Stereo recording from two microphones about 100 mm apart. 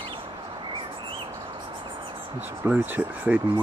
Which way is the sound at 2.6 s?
15° right (ahead or behind).